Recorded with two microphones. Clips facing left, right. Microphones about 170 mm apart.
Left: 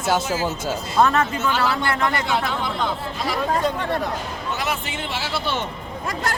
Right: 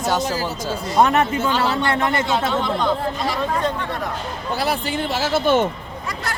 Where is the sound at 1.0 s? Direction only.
20° right (ahead or behind).